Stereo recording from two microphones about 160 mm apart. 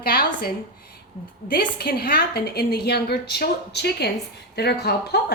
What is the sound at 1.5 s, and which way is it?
A woman's voice, 75° left (ahead or behind).